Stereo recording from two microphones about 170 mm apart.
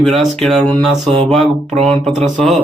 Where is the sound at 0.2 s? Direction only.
Centre (ahead or behind).